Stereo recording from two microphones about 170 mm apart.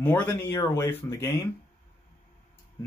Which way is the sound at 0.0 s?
10° left (ahead or behind).